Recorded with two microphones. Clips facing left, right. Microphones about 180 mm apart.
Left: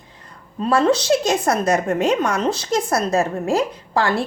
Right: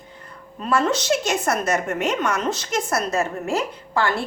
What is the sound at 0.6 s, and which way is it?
A woman's voice, 35° left (ahead or behind).